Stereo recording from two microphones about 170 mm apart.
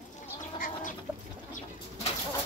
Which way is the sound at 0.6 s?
50° left (ahead or behind).